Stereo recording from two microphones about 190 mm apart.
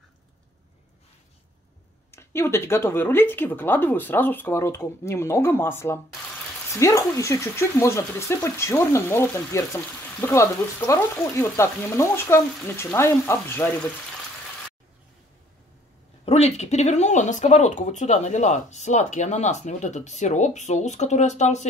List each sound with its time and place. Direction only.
2.0 s speech: 15° left (ahead or behind)
16.3 s speech: 35° left (ahead or behind)